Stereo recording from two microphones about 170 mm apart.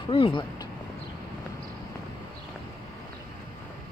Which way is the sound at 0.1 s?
30° left (ahead or behind).